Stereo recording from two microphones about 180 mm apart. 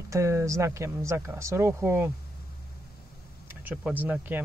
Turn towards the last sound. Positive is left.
turn(degrees=-10)  # may be behind; listen again after turning